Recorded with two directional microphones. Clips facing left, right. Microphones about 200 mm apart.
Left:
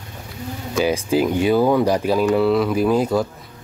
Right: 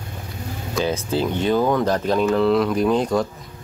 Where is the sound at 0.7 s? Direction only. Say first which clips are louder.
Left 4 dB; 10° left (ahead or behind).